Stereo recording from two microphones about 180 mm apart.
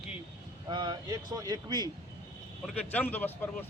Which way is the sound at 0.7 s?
25° right (ahead or behind).